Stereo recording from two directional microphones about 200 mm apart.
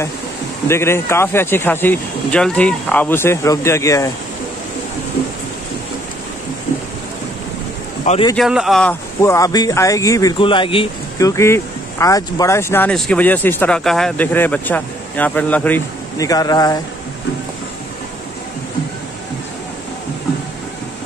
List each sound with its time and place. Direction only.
0.7 s speech: 15° left (ahead or behind)
8.0 s speech: 35° left (ahead or behind)
8.4 s speech: centre (ahead or behind)
9.2 s speech: 15° left (ahead or behind)